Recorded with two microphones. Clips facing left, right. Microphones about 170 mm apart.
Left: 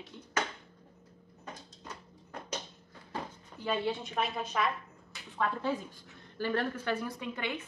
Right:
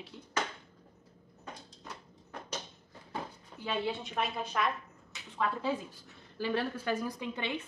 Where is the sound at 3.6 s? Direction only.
Centre (ahead or behind).